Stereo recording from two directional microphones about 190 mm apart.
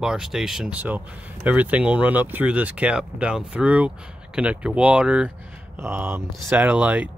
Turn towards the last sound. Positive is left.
turn(degrees=-5)  # may be behind; listen again after turning